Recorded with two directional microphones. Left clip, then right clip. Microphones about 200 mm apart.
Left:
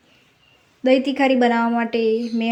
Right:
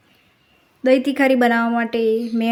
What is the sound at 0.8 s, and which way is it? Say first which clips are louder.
A woman's voice: right 1 dB; 10° right (ahead or behind).